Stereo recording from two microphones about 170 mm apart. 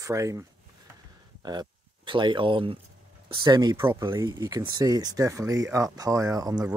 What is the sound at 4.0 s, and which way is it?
Speech, 25° right (ahead or behind).